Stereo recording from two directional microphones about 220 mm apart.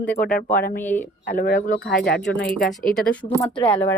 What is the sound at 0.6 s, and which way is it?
Speech, 40° left (ahead or behind).